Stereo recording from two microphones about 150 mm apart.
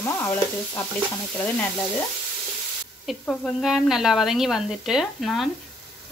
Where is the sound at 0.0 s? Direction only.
15° left (ahead or behind).